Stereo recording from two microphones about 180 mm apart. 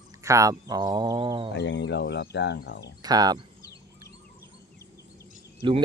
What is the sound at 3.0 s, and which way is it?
Speech, 20° right (ahead or behind).